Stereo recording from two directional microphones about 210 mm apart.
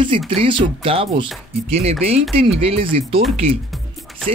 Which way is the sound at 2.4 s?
25° right (ahead or behind).